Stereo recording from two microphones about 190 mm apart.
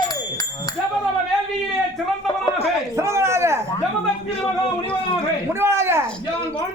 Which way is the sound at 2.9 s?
15° right (ahead or behind).